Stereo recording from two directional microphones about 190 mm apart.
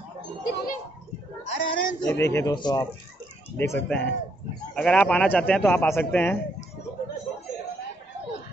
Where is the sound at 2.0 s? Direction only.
15° left (ahead or behind).